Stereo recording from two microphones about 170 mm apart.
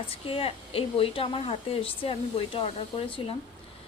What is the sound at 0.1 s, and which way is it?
A woman's voice, 35° left (ahead or behind).